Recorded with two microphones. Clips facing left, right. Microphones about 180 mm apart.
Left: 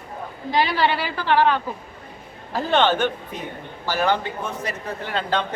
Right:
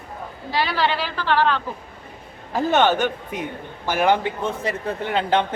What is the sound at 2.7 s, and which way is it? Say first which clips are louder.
A man's voice: even; 10° right (ahead or behind).